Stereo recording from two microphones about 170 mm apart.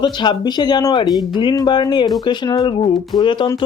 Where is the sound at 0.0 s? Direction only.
25° left (ahead or behind).